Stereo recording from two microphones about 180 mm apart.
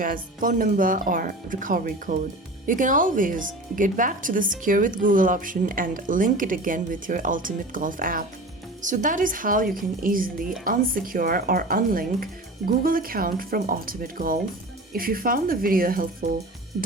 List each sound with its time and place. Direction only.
0.0 s speech: 50° right (ahead or behind)